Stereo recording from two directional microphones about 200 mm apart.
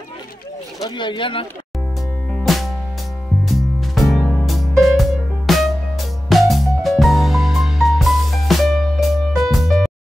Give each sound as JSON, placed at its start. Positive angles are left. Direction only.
{"t": 0.8, "sound": "speech", "side_deg": 25}
{"t": 2.3, "sound": "music", "side_deg": 0}